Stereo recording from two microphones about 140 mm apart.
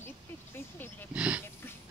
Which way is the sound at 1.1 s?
10° right (ahead or behind).